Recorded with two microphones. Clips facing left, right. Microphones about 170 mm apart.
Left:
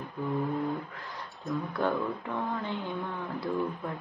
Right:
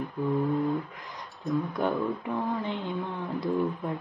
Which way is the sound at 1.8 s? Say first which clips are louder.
Even; 15° right (ahead or behind).